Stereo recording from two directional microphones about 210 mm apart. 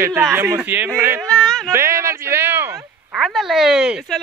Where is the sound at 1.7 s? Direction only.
15° right (ahead or behind).